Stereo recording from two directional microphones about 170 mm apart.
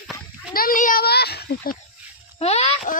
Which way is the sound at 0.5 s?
55° left (ahead or behind).